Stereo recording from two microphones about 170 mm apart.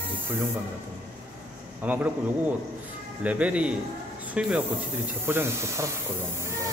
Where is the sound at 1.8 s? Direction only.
10° right (ahead or behind).